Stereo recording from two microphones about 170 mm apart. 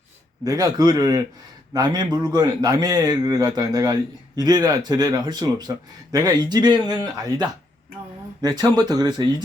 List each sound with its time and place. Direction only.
0.4 s a man's voice: 20° right (ahead or behind)